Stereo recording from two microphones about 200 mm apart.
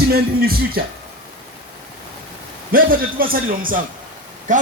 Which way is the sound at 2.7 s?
45° right (ahead or behind).